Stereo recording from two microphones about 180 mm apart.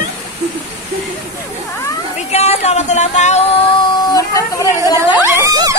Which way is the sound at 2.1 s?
35° left (ahead or behind).